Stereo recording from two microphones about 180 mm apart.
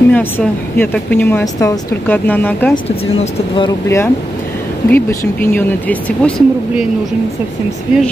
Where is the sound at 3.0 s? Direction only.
35° left (ahead or behind).